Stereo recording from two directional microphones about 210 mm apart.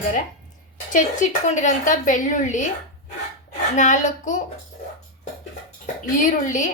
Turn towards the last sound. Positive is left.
turn(degrees=35)  # may be behind; listen again after turning